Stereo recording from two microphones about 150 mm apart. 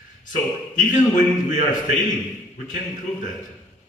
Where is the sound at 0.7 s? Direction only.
60° left (ahead or behind).